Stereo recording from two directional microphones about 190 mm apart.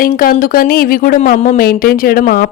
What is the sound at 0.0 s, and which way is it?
Speech, 50° left (ahead or behind).